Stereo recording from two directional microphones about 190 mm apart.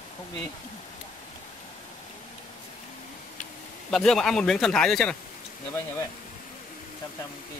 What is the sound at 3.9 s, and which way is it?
Speech, centre (ahead or behind).